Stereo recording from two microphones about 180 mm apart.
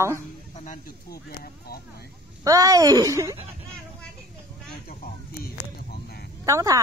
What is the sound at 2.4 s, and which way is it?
Speech, 20° right (ahead or behind).